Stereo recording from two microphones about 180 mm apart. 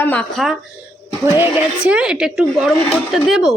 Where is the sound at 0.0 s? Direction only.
5° left (ahead or behind).